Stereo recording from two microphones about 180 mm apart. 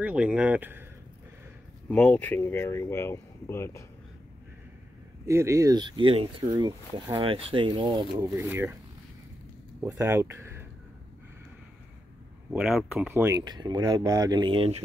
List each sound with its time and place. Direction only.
0.0 s speech: 5° right (ahead or behind)
1.9 s speech: 10° left (ahead or behind)
5.2 s speech: 15° right (ahead or behind)
9.8 s speech: 15° right (ahead or behind)
12.5 s speech: 5° right (ahead or behind)
13.1 s speech: 15° right (ahead or behind)